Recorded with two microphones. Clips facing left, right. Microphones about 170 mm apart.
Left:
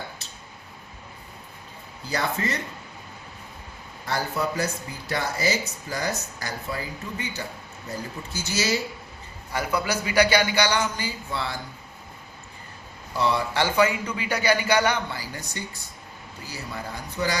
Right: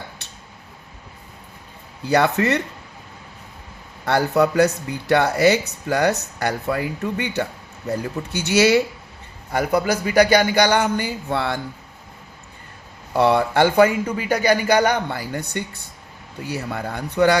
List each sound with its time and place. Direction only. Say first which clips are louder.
2.0 s speech: right 10 dB; 65° right (ahead or behind)
4.0 s speech: right 9 dB; 70° right (ahead or behind)
9.5 s a man's voice: right 7 dB; 50° right (ahead or behind)
13.1 s a man's voice: right 8 dB; 60° right (ahead or behind)